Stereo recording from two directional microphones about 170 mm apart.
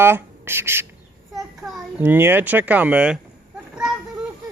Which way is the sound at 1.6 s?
Centre (ahead or behind).